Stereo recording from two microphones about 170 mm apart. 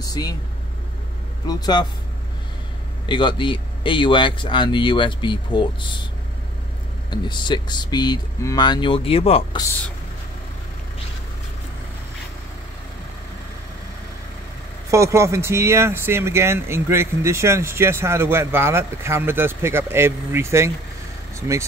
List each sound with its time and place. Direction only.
0.0 s speech: 20° left (ahead or behind)
1.5 s speech: 25° left (ahead or behind)
3.1 s speech: 30° left (ahead or behind)
7.1 s speech: 25° left (ahead or behind)
14.9 s speech: 15° right (ahead or behind)